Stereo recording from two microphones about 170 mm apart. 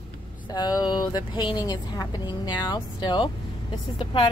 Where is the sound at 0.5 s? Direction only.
25° left (ahead or behind).